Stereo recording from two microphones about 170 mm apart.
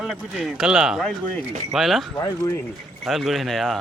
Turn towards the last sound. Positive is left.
turn(degrees=0)  # may be behind; listen again after turning